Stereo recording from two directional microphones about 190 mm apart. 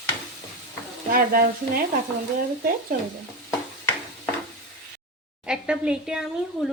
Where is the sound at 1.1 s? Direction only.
50° right (ahead or behind).